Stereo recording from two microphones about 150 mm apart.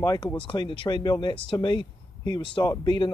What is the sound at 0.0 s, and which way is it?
Speech, 25° left (ahead or behind).